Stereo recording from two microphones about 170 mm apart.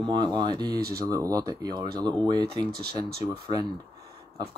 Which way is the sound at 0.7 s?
65° right (ahead or behind).